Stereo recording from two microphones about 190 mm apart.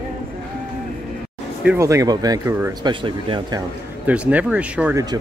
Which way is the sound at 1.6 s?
15° right (ahead or behind).